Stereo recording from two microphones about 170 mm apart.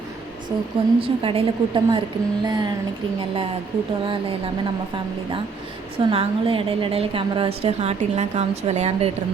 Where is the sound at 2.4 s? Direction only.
25° right (ahead or behind).